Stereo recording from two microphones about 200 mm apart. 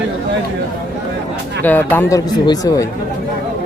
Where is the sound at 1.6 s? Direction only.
10° left (ahead or behind).